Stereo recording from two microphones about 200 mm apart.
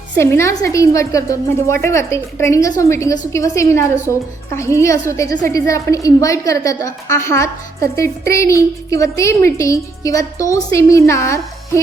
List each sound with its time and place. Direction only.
0.2 s a woman's voice: 15° left (ahead or behind)